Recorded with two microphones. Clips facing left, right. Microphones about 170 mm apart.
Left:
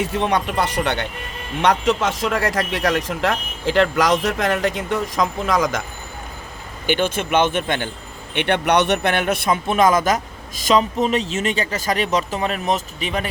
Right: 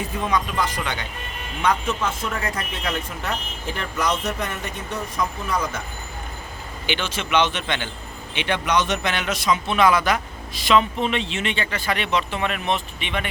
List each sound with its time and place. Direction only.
0.0 s speech: 75° left (ahead or behind)
1.6 s speech: 85° left
6.8 s a man's voice: 50° left (ahead or behind)
8.4 s a man's voice: 60° left (ahead or behind); by 13.3 s 40° left (ahead or behind)